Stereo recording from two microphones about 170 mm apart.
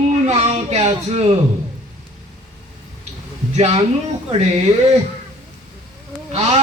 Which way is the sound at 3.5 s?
40° right (ahead or behind).